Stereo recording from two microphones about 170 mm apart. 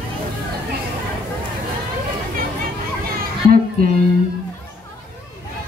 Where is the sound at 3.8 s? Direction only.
60° right (ahead or behind).